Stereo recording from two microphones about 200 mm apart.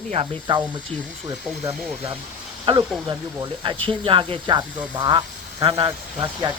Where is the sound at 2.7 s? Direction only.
25° right (ahead or behind).